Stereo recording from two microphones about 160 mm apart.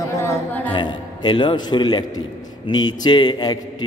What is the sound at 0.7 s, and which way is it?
A man's voice, 30° left (ahead or behind).